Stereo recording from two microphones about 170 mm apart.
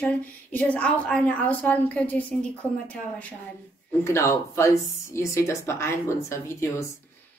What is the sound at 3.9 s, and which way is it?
A woman's voice, 15° left (ahead or behind).